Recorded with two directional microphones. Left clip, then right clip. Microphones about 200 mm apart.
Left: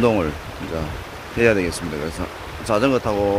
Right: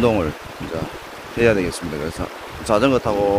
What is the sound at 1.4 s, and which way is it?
Speech, centre (ahead or behind).